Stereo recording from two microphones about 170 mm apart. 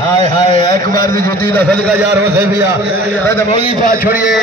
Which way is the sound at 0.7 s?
55° right (ahead or behind).